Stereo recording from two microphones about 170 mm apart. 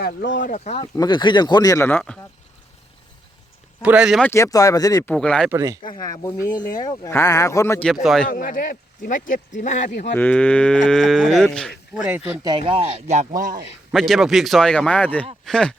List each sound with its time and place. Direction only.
0.0 s speech: 65° left (ahead or behind); by 0.9 s 40° left (ahead or behind)
0.9 s speech: 25° left (ahead or behind); by 2.1 s 10° left (ahead or behind)
3.8 s speech: 5° right (ahead or behind)
4.2 s speech: 15° left (ahead or behind)
5.1 s speech: 5° left (ahead or behind)
5.5 s speech: 15° right (ahead or behind)
5.8 s speech: 20° left (ahead or behind)
7.9 s speech: centre (ahead or behind)
8.3 s speech: 55° left (ahead or behind)
10.2 s speech: 10° left (ahead or behind)
12.4 s speech: 30° right (ahead or behind); by 13.6 s 50° right (ahead or behind)
13.9 s speech: centre (ahead or behind)